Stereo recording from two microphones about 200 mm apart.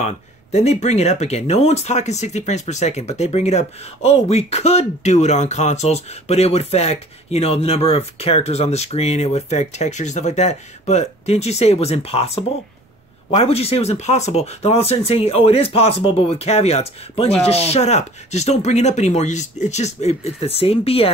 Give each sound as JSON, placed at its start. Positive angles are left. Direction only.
{"t": 0.0, "sound": "speech", "side_deg": 35}